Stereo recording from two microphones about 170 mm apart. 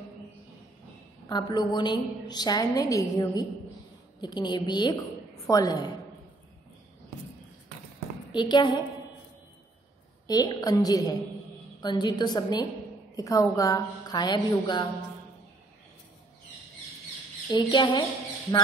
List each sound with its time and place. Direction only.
1.3 s a woman's voice: 25° left (ahead or behind)
8.3 s a woman's voice: 25° left (ahead or behind)
10.2 s a woman's voice: 20° left (ahead or behind)
17.5 s a woman's voice: 25° left (ahead or behind)